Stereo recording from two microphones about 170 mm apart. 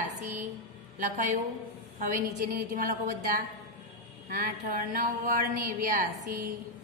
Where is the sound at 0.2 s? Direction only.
45° right (ahead or behind).